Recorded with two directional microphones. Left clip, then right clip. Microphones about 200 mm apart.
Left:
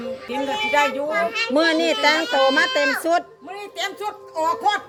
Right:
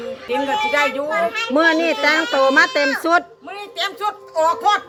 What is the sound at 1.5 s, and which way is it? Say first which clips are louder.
A woman's voice: right 3 dB; 10° right (ahead or behind).